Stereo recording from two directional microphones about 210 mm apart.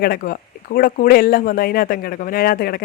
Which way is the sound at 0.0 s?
45° left (ahead or behind).